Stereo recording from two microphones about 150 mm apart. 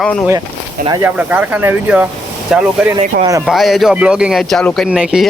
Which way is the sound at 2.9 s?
20° right (ahead or behind).